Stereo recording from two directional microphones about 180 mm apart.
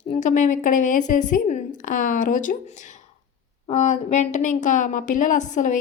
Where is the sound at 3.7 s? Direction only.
40° left (ahead or behind).